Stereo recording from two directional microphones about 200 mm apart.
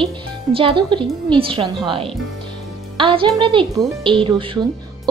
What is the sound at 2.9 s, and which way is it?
A woman's voice, 25° right (ahead or behind).